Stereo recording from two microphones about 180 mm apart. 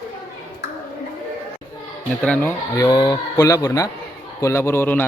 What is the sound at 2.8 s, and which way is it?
A man's voice, 20° left (ahead or behind).